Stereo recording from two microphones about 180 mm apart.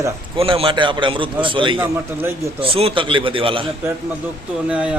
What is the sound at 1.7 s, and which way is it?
Speech, 10° right (ahead or behind).